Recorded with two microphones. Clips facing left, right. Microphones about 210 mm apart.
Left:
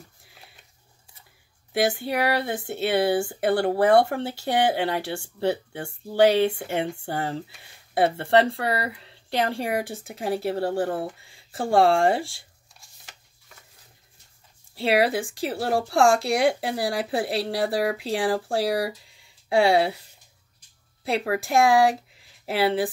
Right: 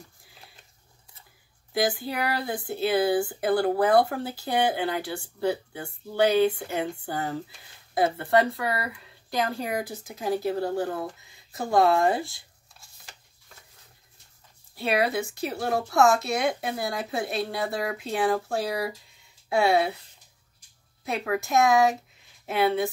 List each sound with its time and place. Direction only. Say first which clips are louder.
1.7 s speech: left 3 dB; 25° left (ahead or behind)
14.8 s speech: left 3 dB; 30° left (ahead or behind)
18.6 s speech: left 4 dB; 75° left (ahead or behind)
21.1 s speech: left 2 dB; 30° left (ahead or behind)